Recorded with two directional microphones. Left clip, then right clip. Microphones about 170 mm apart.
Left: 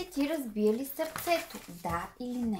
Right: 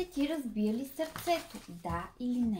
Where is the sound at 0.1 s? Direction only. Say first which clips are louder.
Left 2 dB; 35° left (ahead or behind).